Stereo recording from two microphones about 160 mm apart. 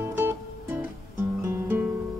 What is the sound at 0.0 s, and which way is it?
Music, 15° right (ahead or behind).